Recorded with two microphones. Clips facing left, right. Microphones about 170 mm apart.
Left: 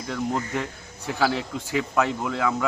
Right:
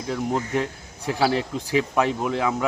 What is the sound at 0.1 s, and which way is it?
A man's voice, 15° right (ahead or behind).